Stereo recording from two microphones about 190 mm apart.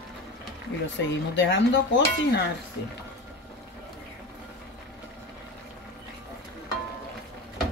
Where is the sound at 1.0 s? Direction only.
70° left (ahead or behind).